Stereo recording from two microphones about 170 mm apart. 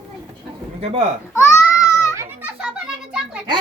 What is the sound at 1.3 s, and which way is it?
Baby cry, 20° left (ahead or behind).